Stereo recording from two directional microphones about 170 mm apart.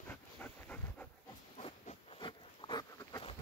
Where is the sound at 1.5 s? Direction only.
35° left (ahead or behind).